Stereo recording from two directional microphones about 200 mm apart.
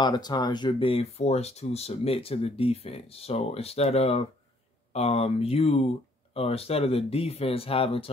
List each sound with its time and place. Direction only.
0.0 s speech: 20° left (ahead or behind)